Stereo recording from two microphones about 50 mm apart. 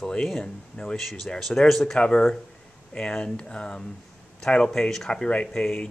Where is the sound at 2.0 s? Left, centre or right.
Centre.